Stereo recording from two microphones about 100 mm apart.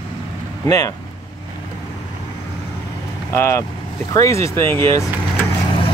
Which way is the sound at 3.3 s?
25° left (ahead or behind).